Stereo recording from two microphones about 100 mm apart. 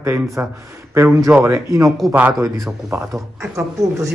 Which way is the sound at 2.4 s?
25° right (ahead or behind).